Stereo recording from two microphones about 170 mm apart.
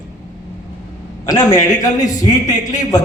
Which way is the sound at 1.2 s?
20° left (ahead or behind).